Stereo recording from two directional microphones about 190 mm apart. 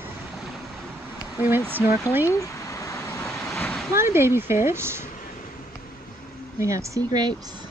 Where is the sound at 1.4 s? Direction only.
10° right (ahead or behind).